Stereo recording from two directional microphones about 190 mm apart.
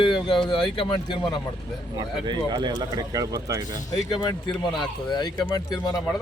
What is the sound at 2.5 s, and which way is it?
Speech, 20° right (ahead or behind).